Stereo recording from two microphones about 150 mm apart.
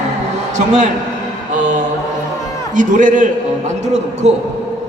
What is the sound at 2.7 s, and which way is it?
Speech, 60° right (ahead or behind).